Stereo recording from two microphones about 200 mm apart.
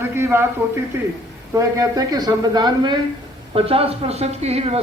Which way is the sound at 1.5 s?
15° right (ahead or behind).